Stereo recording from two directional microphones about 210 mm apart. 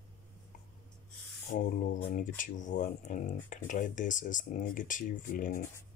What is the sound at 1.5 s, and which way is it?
Speech, 40° left (ahead or behind).